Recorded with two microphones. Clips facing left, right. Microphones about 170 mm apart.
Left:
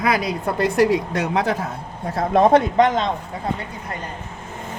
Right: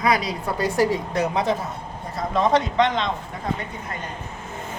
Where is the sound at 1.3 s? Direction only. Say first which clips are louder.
Left 3 dB; 90° left.